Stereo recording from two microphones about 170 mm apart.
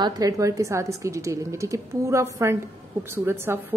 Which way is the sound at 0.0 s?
25° right (ahead or behind).